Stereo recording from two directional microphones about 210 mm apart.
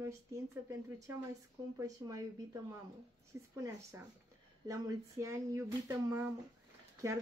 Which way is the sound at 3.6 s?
15° right (ahead or behind).